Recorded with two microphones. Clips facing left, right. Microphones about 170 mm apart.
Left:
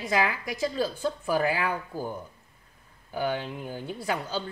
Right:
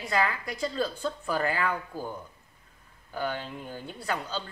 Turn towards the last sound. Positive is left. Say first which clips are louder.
# left 3 dB
turn(degrees=10)  # may be behind; listen again after turning